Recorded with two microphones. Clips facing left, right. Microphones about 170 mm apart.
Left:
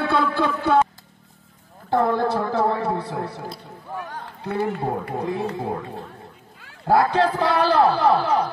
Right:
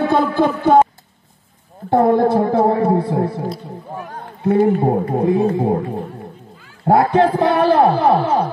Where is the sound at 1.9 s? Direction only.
25° right (ahead or behind).